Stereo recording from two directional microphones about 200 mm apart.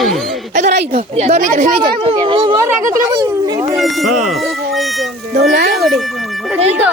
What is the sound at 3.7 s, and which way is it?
Speech, centre (ahead or behind).